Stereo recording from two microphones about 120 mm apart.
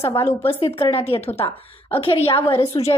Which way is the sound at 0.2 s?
20° left (ahead or behind).